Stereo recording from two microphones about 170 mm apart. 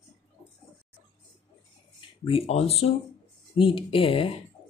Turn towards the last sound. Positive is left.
turn(degrees=30)  # may be behind; listen again after turning